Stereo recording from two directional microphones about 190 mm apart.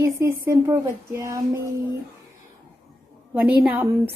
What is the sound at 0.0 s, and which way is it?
Speech, 15° right (ahead or behind).